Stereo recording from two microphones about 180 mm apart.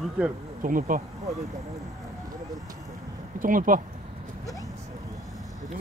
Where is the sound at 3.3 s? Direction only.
50° right (ahead or behind).